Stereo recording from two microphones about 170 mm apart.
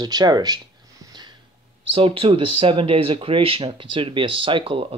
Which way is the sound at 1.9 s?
30° right (ahead or behind).